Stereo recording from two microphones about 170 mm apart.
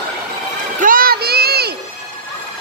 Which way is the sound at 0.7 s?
55° right (ahead or behind).